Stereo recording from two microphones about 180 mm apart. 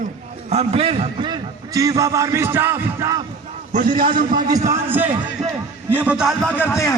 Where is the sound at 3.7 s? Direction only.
45° right (ahead or behind).